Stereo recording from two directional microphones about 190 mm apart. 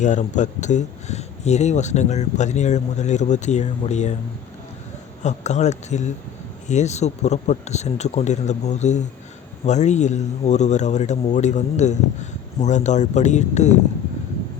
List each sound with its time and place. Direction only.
0.0 s speech: 40° left (ahead or behind)
5.2 s speech: 35° left (ahead or behind)